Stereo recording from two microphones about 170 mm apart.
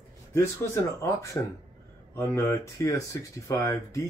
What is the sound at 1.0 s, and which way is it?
Speech, 20° left (ahead or behind).